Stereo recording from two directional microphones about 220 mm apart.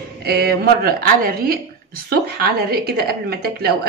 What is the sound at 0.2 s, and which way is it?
A woman's voice, 45° right (ahead or behind).